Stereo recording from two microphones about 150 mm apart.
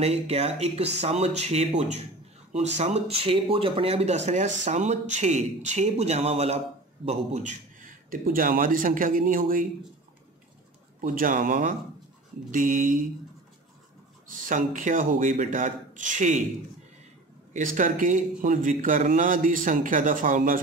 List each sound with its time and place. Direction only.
0.0 s speech: 45° right (ahead or behind); by 9.7 s 70° right (ahead or behind)
11.0 s speech: 65° right (ahead or behind)
14.4 s speech: 60° right (ahead or behind)
17.5 s speech: 60° right (ahead or behind)